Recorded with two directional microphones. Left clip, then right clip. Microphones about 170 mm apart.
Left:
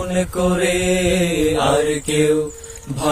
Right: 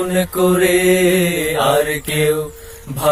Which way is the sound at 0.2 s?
35° right (ahead or behind).